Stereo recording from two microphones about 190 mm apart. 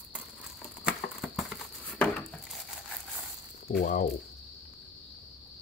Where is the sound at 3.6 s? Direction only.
50° left (ahead or behind).